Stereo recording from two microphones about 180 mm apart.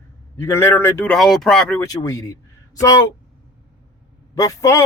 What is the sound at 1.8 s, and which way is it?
Speech, 20° left (ahead or behind).